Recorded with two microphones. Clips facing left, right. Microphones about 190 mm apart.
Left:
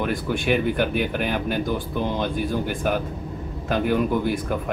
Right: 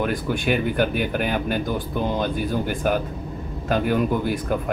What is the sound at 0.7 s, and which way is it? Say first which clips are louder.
Speech: right 1 dB; 50° right (ahead or behind).